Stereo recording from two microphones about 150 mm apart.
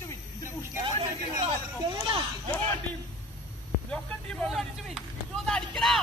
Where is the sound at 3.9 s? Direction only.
5° left (ahead or behind).